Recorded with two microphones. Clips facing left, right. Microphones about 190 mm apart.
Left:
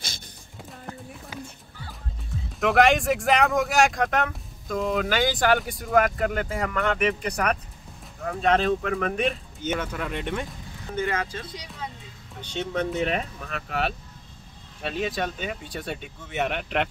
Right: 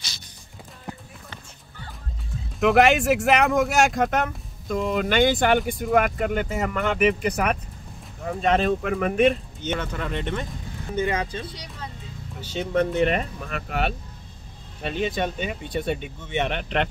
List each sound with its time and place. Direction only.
2.6 s speech: centre (ahead or behind)
11.0 s speech: 15° right (ahead or behind)
12.4 s speech: 5° right (ahead or behind)